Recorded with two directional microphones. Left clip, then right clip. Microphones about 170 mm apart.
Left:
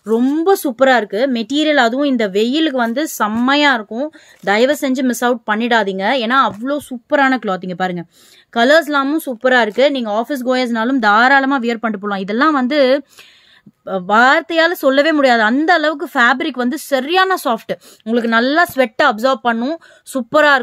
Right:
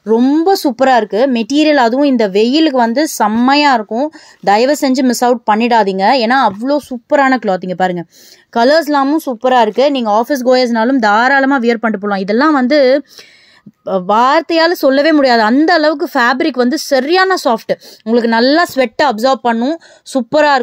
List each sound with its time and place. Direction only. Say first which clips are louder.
0.0 s speech: right 4 dB; 30° right (ahead or behind)